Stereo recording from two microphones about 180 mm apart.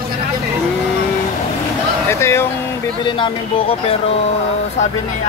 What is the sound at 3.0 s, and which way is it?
Speech, 25° left (ahead or behind).